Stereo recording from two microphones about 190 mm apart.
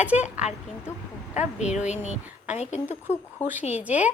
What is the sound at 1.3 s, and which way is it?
A woman's voice, 40° left (ahead or behind).